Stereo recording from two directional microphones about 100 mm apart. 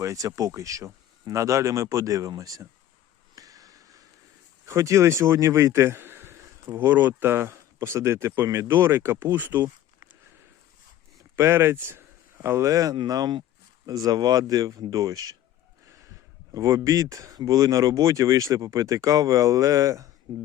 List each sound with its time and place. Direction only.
0.0 s speech: 35° right (ahead or behind)
3.3 s a sound: 35° right (ahead or behind)
4.6 s a man's voice: 30° right (ahead or behind)
11.3 s speech: 25° right (ahead or behind)
16.6 s speech: 30° right (ahead or behind)
20.3 s speech: 45° right (ahead or behind)